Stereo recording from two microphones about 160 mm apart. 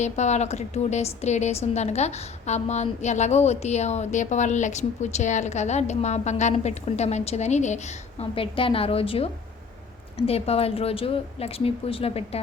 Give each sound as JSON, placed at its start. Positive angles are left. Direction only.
{"t": 0.0, "sound": "a woman's voice", "side_deg": 45}
{"t": 8.2, "sound": "speech", "side_deg": 35}